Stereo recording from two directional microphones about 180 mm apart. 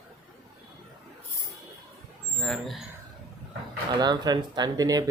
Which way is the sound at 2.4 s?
Centre (ahead or behind).